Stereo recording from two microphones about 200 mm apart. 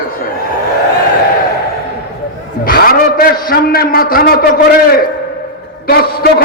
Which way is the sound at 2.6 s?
50° left (ahead or behind).